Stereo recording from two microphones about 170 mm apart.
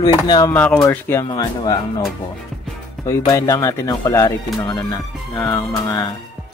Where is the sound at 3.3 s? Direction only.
20° left (ahead or behind).